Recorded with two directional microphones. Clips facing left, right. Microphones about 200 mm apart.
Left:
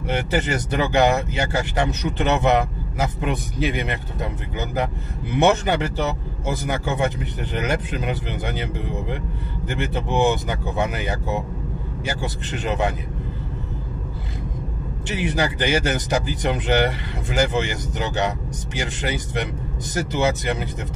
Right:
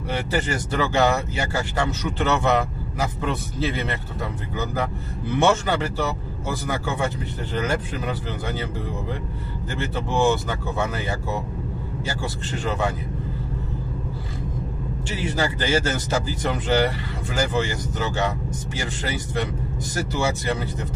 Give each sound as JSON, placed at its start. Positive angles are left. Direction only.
{"t": 0.1, "sound": "speech", "side_deg": 20}
{"t": 9.7, "sound": "speech", "side_deg": 20}
{"t": 15.0, "sound": "speech", "side_deg": 20}